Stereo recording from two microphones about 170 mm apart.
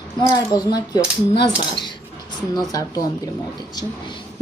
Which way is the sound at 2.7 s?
20° left (ahead or behind).